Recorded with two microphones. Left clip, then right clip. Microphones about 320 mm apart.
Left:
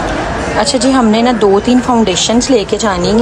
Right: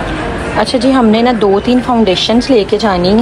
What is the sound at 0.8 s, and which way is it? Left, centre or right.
Speech, centre.